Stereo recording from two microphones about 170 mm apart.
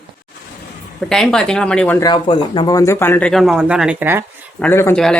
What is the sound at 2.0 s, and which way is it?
Speech, 25° left (ahead or behind).